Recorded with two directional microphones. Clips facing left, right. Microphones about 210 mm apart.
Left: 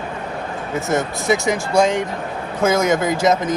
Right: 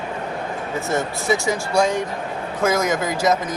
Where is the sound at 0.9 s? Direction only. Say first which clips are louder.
Left 3 dB; 20° left (ahead or behind).